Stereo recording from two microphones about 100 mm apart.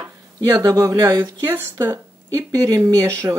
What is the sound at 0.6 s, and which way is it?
Speech, 35° right (ahead or behind).